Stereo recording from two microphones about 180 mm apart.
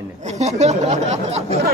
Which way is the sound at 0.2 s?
40° right (ahead or behind).